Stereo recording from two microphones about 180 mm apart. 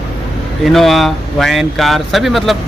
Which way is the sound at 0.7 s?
Centre (ahead or behind).